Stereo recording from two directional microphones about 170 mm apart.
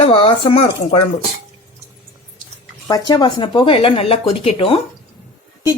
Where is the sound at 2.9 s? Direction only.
25° left (ahead or behind).